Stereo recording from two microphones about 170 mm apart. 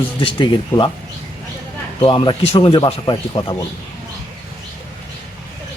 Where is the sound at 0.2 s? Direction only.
30° left (ahead or behind).